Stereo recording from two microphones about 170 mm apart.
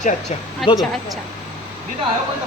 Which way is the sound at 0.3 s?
40° left (ahead or behind).